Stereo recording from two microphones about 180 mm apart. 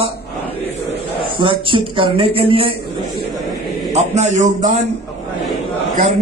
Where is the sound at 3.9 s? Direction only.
40° right (ahead or behind).